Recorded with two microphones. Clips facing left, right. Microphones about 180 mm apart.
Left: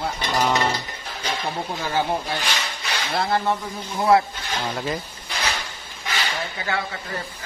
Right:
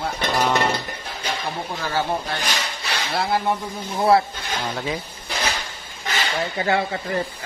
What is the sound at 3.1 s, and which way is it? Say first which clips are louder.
Speech: even; centre (ahead or behind).